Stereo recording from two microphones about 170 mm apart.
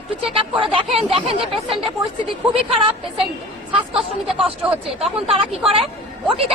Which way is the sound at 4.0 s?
Centre (ahead or behind).